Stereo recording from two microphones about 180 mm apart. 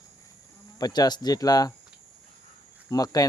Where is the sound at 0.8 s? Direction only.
20° left (ahead or behind).